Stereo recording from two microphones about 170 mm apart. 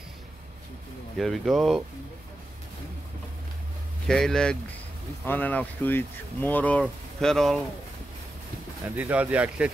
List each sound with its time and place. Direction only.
1.1 s speech: centre (ahead or behind)
4.1 s speech: 5° left (ahead or behind)
8.8 s speech: 10° right (ahead or behind)